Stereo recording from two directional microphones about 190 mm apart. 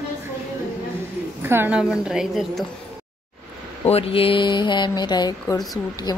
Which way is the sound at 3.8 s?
30° left (ahead or behind).